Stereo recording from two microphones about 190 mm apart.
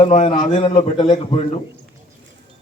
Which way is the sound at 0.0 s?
35° left (ahead or behind).